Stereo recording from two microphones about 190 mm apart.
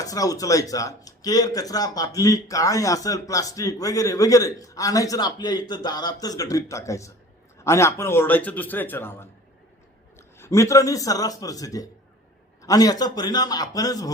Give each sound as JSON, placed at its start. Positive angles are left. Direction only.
{"t": 0.0, "sound": "a man's voice", "side_deg": 20}